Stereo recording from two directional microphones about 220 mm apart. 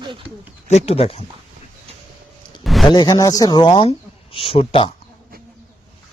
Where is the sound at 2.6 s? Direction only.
Centre (ahead or behind).